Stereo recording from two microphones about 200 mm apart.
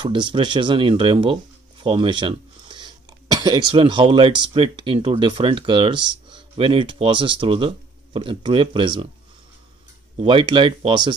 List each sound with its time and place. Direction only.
0.0 s speech: 25° right (ahead or behind)
10.1 s speech: 25° right (ahead or behind)